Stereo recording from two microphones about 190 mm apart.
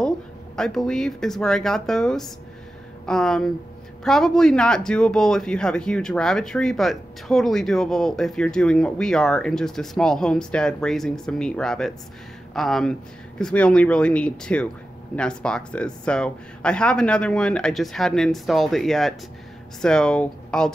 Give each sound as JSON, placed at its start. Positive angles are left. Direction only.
{"t": 0.6, "sound": "speech", "side_deg": 5}